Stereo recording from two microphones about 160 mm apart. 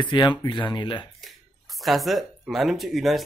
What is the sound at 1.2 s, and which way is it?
Speech, centre (ahead or behind).